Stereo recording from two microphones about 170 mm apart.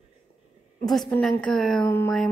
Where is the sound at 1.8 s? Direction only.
15° left (ahead or behind).